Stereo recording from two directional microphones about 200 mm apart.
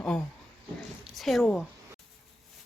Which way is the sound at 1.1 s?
Centre (ahead or behind).